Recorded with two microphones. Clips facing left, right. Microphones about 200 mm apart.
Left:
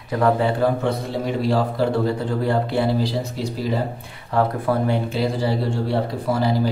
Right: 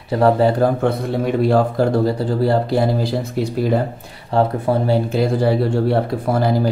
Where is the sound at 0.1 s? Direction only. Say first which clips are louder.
Right 5 dB; 35° right (ahead or behind).